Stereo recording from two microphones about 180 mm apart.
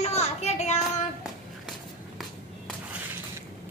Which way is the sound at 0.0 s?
35° left (ahead or behind).